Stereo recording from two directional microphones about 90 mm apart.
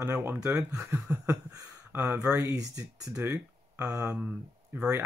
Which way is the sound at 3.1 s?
25° right (ahead or behind).